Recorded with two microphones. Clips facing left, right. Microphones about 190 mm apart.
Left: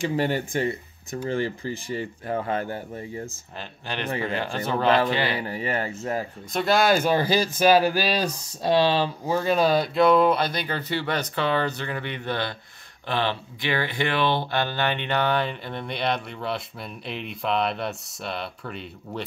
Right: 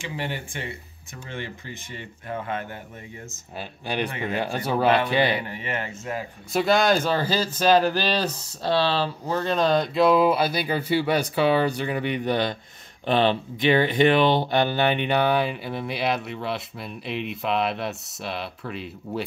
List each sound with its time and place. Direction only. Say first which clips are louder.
0.0 s speech: left 7 dB; 40° left (ahead or behind)
3.5 s speech: right 5 dB; 10° right (ahead or behind)
4.8 s speech: left 1 dB; 35° left (ahead or behind)
5.1 s speech: right 4 dB; 20° right (ahead or behind)
5.5 s speech: left 3 dB; 35° left (ahead or behind)
6.5 s speech: right 1 dB; centre (ahead or behind)